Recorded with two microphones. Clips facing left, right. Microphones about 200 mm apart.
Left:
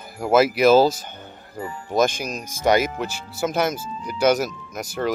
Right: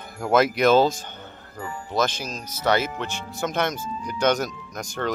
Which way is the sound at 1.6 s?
20° left (ahead or behind).